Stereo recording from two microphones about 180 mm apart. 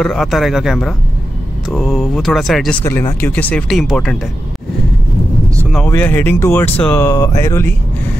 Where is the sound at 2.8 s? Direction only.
15° left (ahead or behind).